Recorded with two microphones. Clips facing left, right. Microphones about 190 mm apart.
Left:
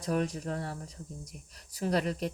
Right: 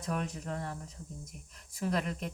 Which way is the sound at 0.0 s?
40° left (ahead or behind).